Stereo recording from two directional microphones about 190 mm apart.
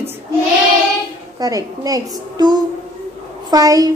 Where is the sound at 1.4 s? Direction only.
20° right (ahead or behind).